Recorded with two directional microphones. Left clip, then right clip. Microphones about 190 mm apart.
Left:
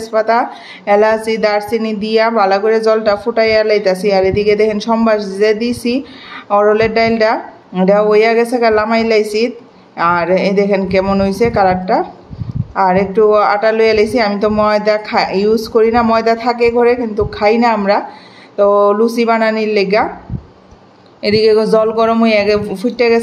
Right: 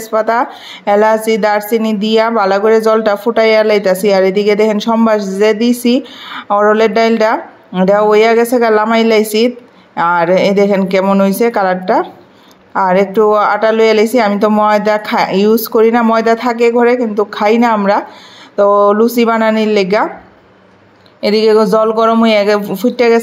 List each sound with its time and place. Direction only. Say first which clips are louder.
0.1 s speech: even; 25° right (ahead or behind)
21.2 s speech: right 1 dB; 25° right (ahead or behind)